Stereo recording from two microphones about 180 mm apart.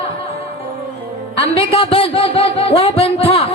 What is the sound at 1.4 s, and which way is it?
A man's voice, 30° left (ahead or behind).